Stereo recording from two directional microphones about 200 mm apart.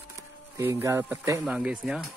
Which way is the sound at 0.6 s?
15° right (ahead or behind).